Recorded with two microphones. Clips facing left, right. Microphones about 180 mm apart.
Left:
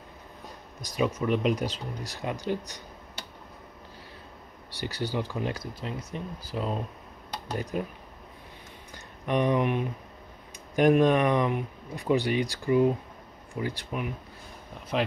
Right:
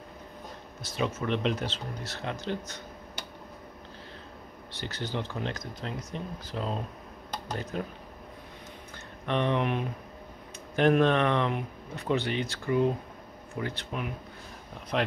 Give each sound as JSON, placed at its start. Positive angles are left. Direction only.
{"t": 0.8, "sound": "speech", "side_deg": 15}
{"t": 4.7, "sound": "speech", "side_deg": 10}
{"t": 9.2, "sound": "speech", "side_deg": 10}
{"t": 10.8, "sound": "speech", "side_deg": 10}